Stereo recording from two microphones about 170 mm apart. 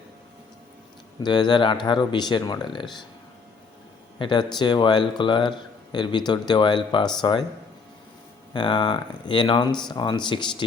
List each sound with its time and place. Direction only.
1.2 s speech: 25° left (ahead or behind)
4.2 s speech: 25° left (ahead or behind)
8.5 s speech: 30° left (ahead or behind)